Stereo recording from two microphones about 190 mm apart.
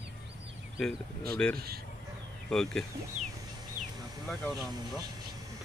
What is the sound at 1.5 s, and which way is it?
Speech, 55° right (ahead or behind).